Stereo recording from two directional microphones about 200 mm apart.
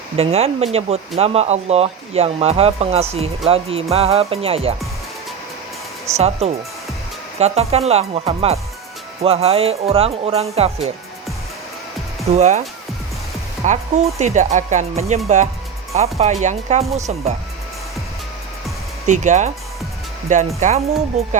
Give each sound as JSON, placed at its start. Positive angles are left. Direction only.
{"t": 0.2, "sound": "speech", "side_deg": -30}
{"t": 6.1, "sound": "speech", "side_deg": -30}
{"t": 12.3, "sound": "speech", "side_deg": -35}
{"t": 13.6, "sound": "speech", "side_deg": -35}
{"t": 19.0, "sound": "speech", "side_deg": -35}